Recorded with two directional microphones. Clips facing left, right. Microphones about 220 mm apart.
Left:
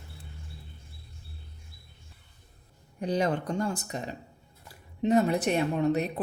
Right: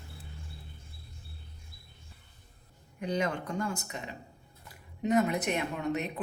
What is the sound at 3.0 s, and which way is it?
Speech, 35° left (ahead or behind).